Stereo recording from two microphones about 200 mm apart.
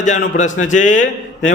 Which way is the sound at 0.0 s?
40° left (ahead or behind).